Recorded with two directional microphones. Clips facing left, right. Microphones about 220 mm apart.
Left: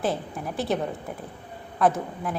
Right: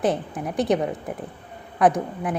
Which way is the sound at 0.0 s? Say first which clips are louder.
Right 4 dB; 15° right (ahead or behind).